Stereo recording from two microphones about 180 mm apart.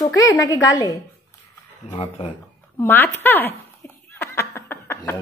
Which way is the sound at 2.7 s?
10° left (ahead or behind).